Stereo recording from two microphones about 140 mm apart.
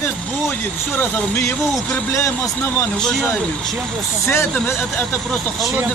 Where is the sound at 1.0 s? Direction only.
20° left (ahead or behind).